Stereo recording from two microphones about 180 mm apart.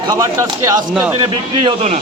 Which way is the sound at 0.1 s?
20° right (ahead or behind).